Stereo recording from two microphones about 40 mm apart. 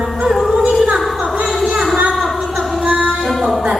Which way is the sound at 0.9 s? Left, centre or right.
Centre.